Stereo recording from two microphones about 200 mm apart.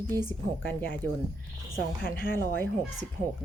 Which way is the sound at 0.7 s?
10° left (ahead or behind).